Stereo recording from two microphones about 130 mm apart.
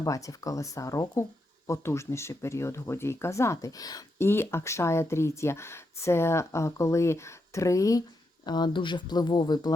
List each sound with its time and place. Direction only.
0.0 s speech: 25° left (ahead or behind)